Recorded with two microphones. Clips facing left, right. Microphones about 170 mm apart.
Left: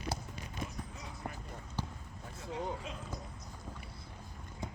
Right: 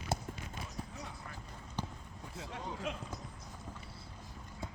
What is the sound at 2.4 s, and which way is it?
Speech, 70° right (ahead or behind).